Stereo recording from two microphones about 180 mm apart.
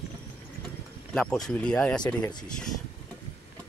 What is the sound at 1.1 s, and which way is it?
Speech, 5° left (ahead or behind).